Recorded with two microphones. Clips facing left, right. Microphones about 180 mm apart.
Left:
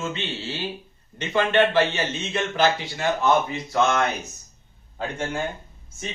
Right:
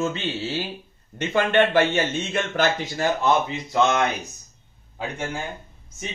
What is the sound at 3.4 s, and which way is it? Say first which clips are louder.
A man's voice: right 1 dB; 15° right (ahead or behind).